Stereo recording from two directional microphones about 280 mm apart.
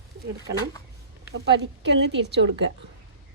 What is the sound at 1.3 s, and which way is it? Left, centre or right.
Speech, right.